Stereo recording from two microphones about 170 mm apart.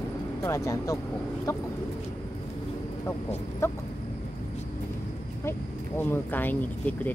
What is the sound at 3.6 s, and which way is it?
Speech, 15° left (ahead or behind).